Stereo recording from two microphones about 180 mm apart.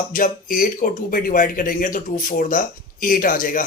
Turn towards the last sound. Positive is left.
turn(degrees=50)  # may be behind; listen again after turning